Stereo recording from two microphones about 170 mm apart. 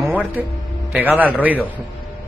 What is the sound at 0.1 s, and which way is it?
A man's voice, 10° right (ahead or behind).